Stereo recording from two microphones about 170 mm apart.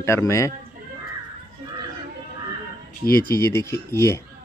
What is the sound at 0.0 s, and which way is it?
Speech, 15° left (ahead or behind).